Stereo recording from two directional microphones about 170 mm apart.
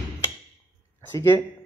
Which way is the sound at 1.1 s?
15° left (ahead or behind).